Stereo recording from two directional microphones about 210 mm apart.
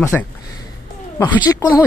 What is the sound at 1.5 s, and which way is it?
Speech, 10° left (ahead or behind).